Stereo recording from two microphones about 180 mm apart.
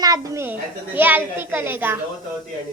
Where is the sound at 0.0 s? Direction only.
15° right (ahead or behind).